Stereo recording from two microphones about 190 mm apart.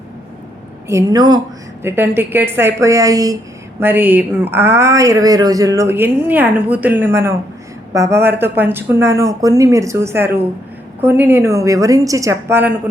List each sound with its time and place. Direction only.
0.9 s speech: 15° right (ahead or behind)